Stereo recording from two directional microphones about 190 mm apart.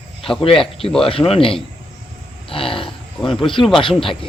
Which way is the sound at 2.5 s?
30° left (ahead or behind).